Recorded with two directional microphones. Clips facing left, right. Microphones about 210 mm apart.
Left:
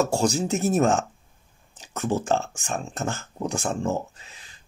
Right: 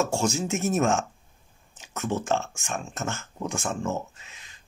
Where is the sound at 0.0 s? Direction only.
35° left (ahead or behind).